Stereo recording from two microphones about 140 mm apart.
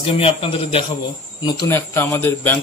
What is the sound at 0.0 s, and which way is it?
Speech, 40° left (ahead or behind).